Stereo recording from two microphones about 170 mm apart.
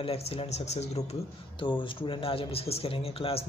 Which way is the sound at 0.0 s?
35° left (ahead or behind).